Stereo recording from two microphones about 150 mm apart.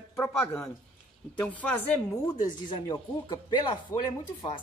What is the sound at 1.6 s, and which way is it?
Speech, 10° left (ahead or behind).